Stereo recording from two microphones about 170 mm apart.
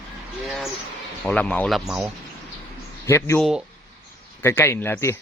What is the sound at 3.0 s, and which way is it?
Speech, 15° left (ahead or behind).